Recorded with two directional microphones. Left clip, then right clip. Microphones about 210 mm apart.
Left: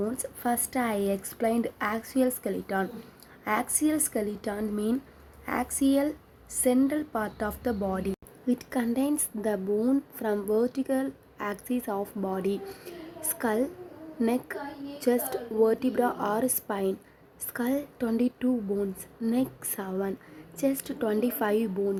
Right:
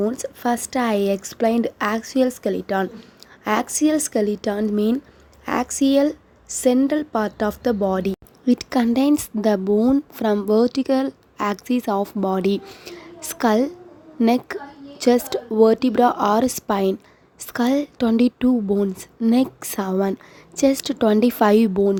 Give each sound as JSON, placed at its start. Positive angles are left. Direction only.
{"t": 0.0, "sound": "a woman's voice", "side_deg": -35}